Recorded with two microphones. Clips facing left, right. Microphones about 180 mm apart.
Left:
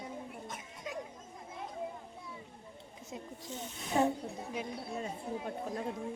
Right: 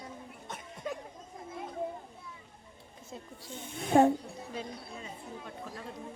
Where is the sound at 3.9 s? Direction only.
55° right (ahead or behind).